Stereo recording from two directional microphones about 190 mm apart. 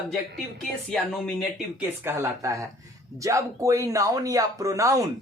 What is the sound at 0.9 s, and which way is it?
Speech, 5° left (ahead or behind).